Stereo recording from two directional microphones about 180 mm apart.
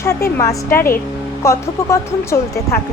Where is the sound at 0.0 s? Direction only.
15° left (ahead or behind).